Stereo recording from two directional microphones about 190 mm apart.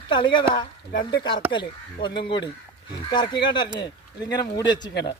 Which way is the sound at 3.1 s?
25° left (ahead or behind).